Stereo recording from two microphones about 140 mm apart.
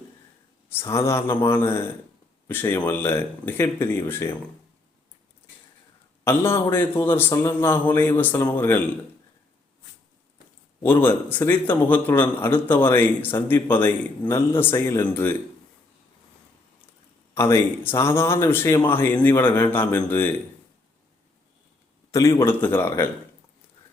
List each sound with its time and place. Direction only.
0.7 s a man's voice: 20° left (ahead or behind)
6.2 s a man's voice: 20° left (ahead or behind)
10.8 s a man's voice: 15° left (ahead or behind)
17.3 s a man's voice: 20° left (ahead or behind)
22.1 s a man's voice: 20° left (ahead or behind)